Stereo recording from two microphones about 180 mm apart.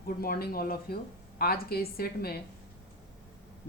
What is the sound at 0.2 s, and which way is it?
A woman's voice, 55° left (ahead or behind).